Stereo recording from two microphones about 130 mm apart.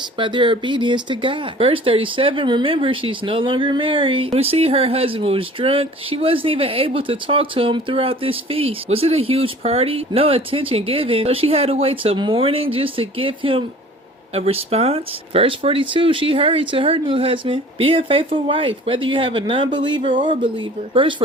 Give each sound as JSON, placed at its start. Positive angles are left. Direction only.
{"t": 0.2, "sound": "speech", "side_deg": -40}